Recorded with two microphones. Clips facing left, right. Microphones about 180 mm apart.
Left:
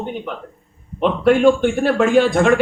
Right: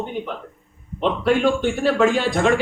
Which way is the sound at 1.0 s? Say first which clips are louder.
Left 4 dB; 55° left (ahead or behind).